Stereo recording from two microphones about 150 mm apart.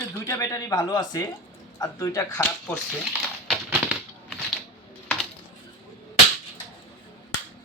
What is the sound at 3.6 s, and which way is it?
Typewriter, 10° right (ahead or behind).